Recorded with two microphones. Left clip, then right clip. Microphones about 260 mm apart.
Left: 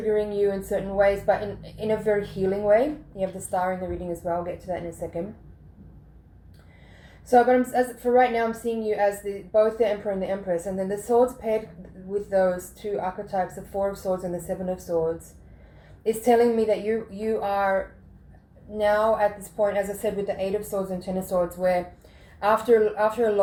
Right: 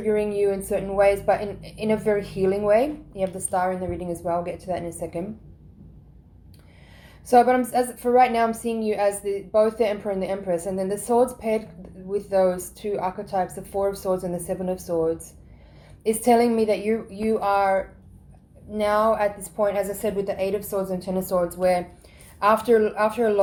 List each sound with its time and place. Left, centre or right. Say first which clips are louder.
0.1 s a woman's voice: right 2 dB; right
7.3 s a woman's voice: right 1 dB; right